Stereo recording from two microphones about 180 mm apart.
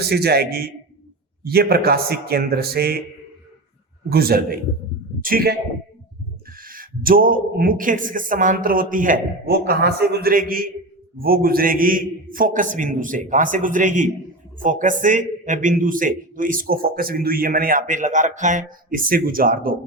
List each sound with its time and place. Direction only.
0.0 s a man's voice: 60° right (ahead or behind)
4.1 s a man's voice: 55° right (ahead or behind)
6.6 s a man's voice: 50° right (ahead or behind)